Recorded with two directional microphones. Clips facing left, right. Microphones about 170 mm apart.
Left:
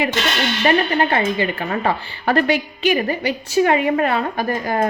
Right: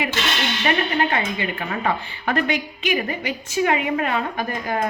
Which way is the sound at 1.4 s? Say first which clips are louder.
Left 5 dB; 35° left (ahead or behind).